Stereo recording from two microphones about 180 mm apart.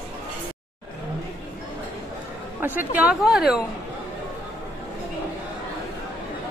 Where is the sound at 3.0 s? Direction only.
5° right (ahead or behind).